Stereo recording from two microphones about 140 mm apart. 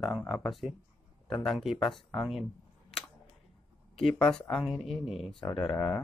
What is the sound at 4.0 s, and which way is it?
Speech, 5° left (ahead or behind).